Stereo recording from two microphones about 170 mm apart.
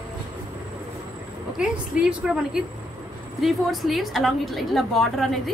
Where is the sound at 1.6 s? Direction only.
5° right (ahead or behind).